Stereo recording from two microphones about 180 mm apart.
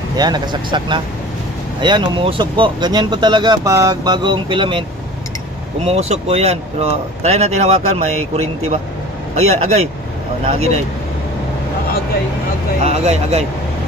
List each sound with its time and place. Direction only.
0.2 s speech: 25° right (ahead or behind)
5.9 s speech: 35° right (ahead or behind)
12.8 s speech: 35° right (ahead or behind)